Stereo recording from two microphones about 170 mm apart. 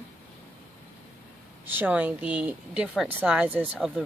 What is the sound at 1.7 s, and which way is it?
Speech, 10° right (ahead or behind).